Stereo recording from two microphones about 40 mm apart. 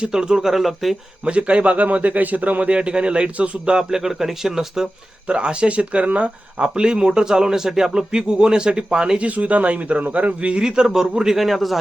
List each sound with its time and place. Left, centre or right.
0.0 s speech: right; by 0.9 s centre
1.2 s a man's voice: right
3.8 s speech: centre
5.3 s speech: right
9.1 s a man's voice: right
10.6 s speech: centre
11.3 s a man's voice: centre